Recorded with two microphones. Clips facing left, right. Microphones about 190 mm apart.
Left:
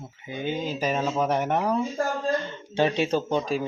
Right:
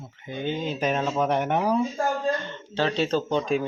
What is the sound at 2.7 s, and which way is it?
Speech, 15° left (ahead or behind).